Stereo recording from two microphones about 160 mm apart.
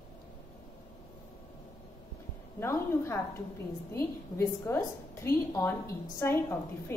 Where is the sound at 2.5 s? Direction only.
15° left (ahead or behind).